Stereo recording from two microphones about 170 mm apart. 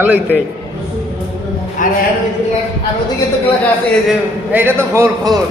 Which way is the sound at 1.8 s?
50° left (ahead or behind).